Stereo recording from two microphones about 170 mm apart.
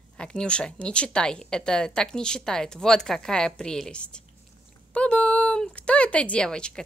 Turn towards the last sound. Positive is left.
turn(degrees=5)  # may be behind; listen again after turning